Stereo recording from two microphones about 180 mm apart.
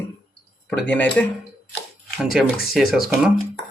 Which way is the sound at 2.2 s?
Centre (ahead or behind).